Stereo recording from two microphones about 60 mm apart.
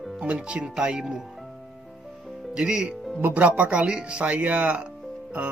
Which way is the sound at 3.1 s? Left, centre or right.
Right.